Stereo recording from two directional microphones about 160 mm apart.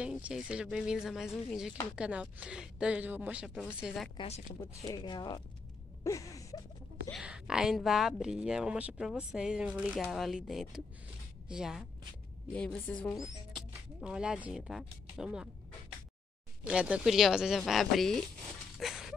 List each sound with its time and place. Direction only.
0.0 s a woman's voice: 5° right (ahead or behind)
4.6 s speech: 25° left (ahead or behind)
6.0 s a sound: 20° left (ahead or behind)
7.1 s speech: 5° right (ahead or behind)
12.5 s a woman's voice: 5° left (ahead or behind)
13.2 s speech: 5° right (ahead or behind)
16.6 s speech: 5° right (ahead or behind)
18.8 s a sound: centre (ahead or behind)